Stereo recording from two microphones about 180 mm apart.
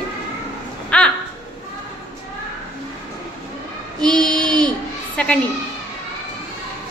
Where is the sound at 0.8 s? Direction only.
5° left (ahead or behind).